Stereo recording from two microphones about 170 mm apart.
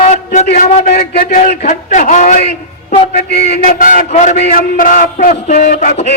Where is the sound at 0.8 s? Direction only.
70° left (ahead or behind); by 2.4 s 50° left (ahead or behind).